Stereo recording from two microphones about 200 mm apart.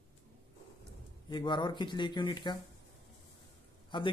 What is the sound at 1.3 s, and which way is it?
Speech, 20° left (ahead or behind).